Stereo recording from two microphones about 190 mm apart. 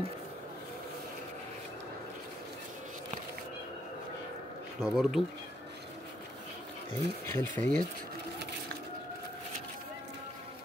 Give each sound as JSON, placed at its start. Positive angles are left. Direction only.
{"t": 4.8, "sound": "speech", "side_deg": 0}
{"t": 6.9, "sound": "speech", "side_deg": 10}